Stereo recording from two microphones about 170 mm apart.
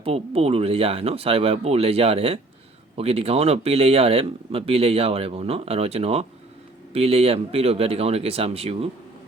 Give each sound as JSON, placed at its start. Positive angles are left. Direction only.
{"t": 0.0, "sound": "speech", "side_deg": -35}